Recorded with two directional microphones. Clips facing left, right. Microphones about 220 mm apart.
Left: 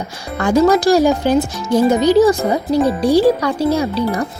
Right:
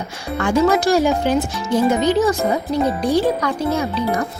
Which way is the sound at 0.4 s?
40° left (ahead or behind).